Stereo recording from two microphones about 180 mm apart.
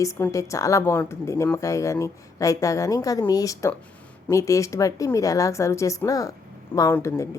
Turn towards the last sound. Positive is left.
turn(degrees=15)  # may be behind; listen again after turning